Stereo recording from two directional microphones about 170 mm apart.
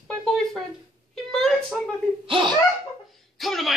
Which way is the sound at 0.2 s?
5° left (ahead or behind).